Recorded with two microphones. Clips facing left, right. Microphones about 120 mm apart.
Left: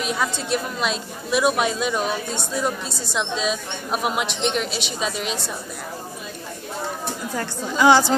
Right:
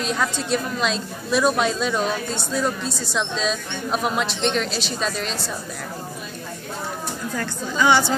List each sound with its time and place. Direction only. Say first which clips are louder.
0.0 s a woman's voice: right 1 dB; 10° left (ahead or behind)
7.3 s a woman's voice: left 1 dB; 25° left (ahead or behind)